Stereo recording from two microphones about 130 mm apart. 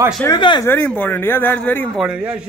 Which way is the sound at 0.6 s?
15° left (ahead or behind).